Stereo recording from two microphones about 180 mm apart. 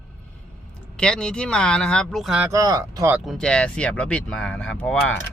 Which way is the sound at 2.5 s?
20° right (ahead or behind).